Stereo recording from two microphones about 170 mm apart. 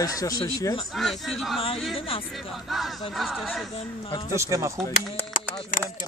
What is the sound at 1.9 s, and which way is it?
Speech, 35° left (ahead or behind).